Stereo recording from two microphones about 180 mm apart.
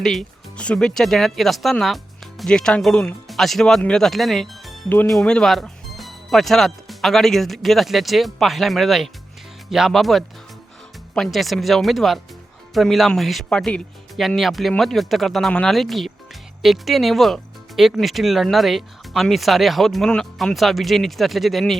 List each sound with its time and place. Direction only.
0.0 s speech: centre (ahead or behind)